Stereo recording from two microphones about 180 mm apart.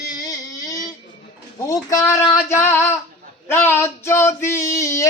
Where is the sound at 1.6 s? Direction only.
20° left (ahead or behind).